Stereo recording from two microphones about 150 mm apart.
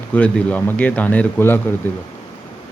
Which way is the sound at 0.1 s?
10° left (ahead or behind).